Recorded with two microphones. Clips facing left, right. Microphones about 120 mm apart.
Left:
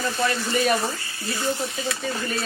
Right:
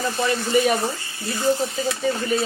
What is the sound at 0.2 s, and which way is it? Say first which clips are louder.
Speech: right 4 dB; 5° right (ahead or behind).